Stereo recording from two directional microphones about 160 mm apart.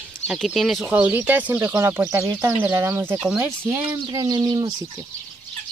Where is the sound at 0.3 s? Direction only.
Centre (ahead or behind).